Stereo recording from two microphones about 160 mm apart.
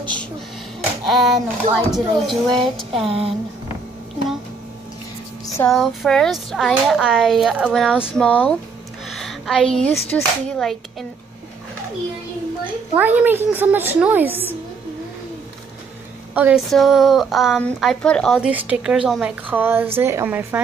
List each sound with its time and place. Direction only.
1.0 s a woman's voice: centre (ahead or behind)
3.1 s speech: 35° right (ahead or behind)
5.7 s a woman's voice: centre (ahead or behind)
12.9 s a woman's voice: 10° right (ahead or behind)
16.3 s a woman's voice: 10° right (ahead or behind)